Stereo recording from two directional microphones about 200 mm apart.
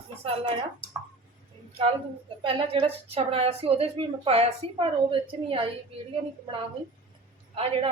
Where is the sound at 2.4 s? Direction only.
25° right (ahead or behind).